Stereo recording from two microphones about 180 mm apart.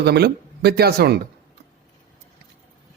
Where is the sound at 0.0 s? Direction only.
65° right (ahead or behind).